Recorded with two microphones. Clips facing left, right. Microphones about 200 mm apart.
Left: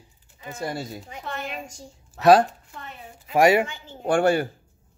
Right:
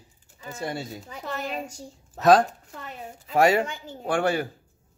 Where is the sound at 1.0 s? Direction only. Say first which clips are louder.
Right 1 dB; 40° right (ahead or behind).